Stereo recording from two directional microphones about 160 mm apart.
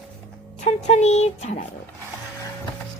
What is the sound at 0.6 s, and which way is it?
Speech, 50° left (ahead or behind).